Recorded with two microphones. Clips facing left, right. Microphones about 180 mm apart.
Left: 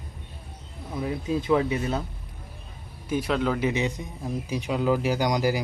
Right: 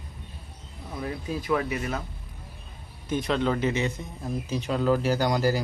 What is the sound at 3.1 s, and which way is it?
Speech, 5° left (ahead or behind).